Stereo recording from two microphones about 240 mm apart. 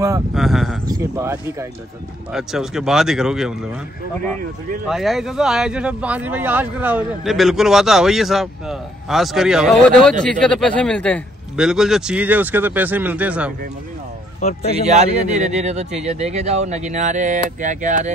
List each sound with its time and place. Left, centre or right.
0.3 s speech: centre
0.8 s speech: centre
4.8 s speech: centre
14.8 s speech: right